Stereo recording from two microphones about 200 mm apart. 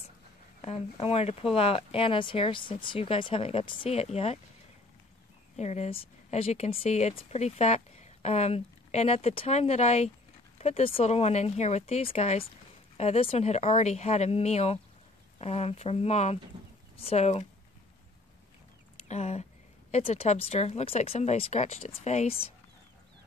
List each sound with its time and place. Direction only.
0.6 s speech: 30° left (ahead or behind)
5.6 s speech: 35° left (ahead or behind)
19.0 s speech: 35° left (ahead or behind)